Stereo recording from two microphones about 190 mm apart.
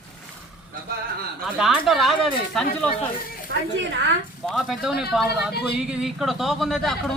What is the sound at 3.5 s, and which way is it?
Speech, 70° right (ahead or behind).